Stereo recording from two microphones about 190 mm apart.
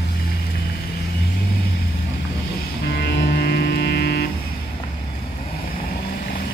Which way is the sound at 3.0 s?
65° left (ahead or behind).